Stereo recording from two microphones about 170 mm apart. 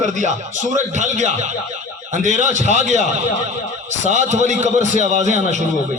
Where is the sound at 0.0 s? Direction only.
45° right (ahead or behind).